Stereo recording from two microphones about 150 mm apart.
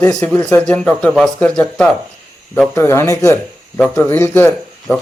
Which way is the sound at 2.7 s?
15° left (ahead or behind).